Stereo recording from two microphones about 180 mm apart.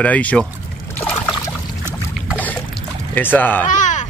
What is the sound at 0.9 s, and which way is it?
Trickle, 10° left (ahead or behind).